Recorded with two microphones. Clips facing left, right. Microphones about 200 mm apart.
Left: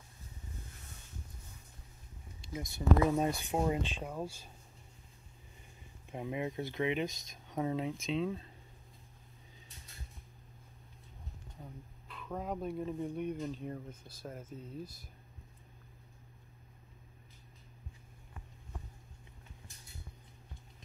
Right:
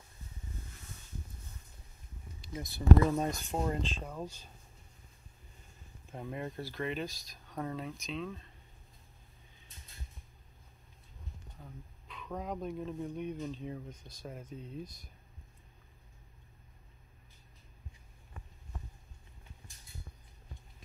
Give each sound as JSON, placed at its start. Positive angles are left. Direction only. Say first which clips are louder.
{"t": 2.4, "sound": "a sound", "louder": "left 1 dB", "side_deg": 25}
{"t": 3.0, "sound": "speech", "louder": "even", "side_deg": 10}
{"t": 6.1, "sound": "speech", "louder": "left 3 dB", "side_deg": 10}
{"t": 6.6, "sound": "speech", "louder": "left 4 dB", "side_deg": 20}
{"t": 11.6, "sound": "speech", "louder": "left 2 dB", "side_deg": 5}